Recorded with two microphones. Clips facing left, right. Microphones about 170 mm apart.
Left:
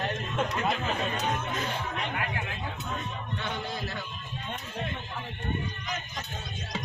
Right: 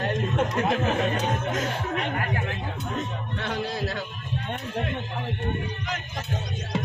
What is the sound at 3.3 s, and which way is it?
Heart sounds, 80° right.